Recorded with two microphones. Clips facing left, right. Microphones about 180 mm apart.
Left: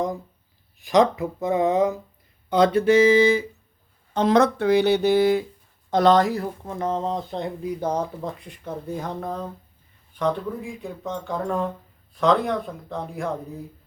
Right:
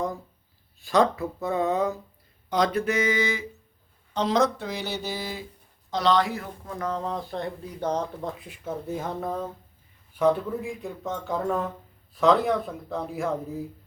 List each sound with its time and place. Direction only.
0.8 s speech: 15° left (ahead or behind)
4.1 s speech: 55° left (ahead or behind)
5.9 s speech: 50° left (ahead or behind)
6.7 s speech: 25° left (ahead or behind); by 8.3 s 10° left (ahead or behind)
8.4 s speech: 5° right (ahead or behind)